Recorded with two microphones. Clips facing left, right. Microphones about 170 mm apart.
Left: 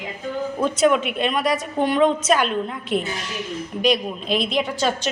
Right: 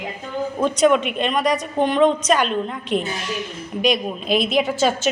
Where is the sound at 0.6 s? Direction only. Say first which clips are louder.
Right 2 dB; 5° left (ahead or behind).